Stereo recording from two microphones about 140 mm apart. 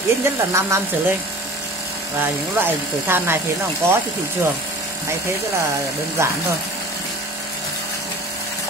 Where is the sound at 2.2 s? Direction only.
15° right (ahead or behind).